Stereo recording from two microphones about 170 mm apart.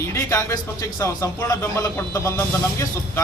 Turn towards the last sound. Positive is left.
turn(degrees=15)  # may be behind; listen again after turning